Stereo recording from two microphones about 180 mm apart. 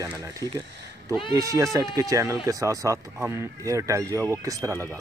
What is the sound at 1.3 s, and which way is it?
Speech, 20° right (ahead or behind).